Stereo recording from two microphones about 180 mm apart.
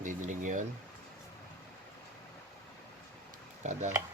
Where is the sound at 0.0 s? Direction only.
45° right (ahead or behind).